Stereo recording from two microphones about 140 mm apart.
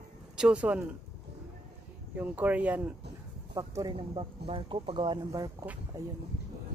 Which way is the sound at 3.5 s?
25° right (ahead or behind).